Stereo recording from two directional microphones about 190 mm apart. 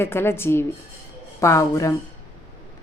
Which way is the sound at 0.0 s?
10° left (ahead or behind).